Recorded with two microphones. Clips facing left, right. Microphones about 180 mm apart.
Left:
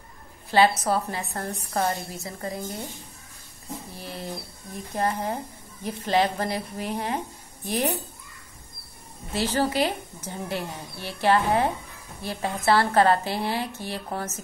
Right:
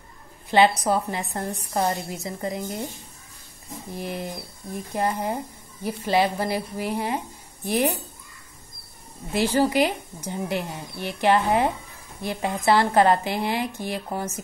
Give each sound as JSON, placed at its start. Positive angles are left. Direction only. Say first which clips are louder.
{"t": 0.5, "sound": "a woman's voice", "louder": "right 2 dB", "side_deg": -20}
{"t": 3.9, "sound": "a woman's voice", "louder": "right 7 dB", "side_deg": -15}
{"t": 9.3, "sound": "a woman's voice", "louder": "right 4 dB", "side_deg": -15}